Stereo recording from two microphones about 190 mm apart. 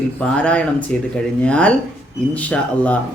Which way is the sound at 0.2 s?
5° left (ahead or behind).